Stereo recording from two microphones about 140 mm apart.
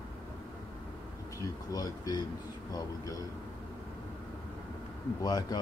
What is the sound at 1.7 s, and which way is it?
Speech, 30° left (ahead or behind).